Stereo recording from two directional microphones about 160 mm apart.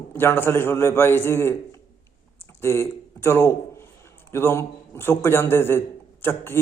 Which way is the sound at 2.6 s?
15° left (ahead or behind).